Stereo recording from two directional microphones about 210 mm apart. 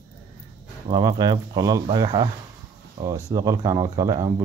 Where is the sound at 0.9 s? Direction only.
20° right (ahead or behind).